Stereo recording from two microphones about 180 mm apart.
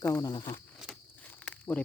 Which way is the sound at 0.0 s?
20° left (ahead or behind).